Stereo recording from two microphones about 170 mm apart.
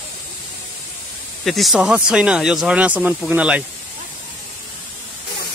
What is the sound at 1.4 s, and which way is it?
Speech, centre (ahead or behind).